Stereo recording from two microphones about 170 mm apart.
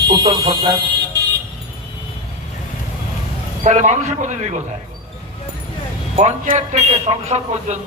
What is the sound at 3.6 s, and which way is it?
A man's voice, 45° right (ahead or behind).